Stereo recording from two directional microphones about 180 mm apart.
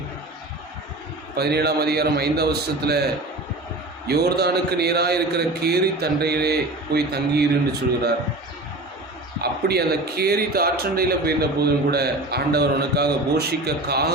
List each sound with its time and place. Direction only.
1.4 s a man's voice: 65° right (ahead or behind)
9.4 s a man's voice: 60° right (ahead or behind)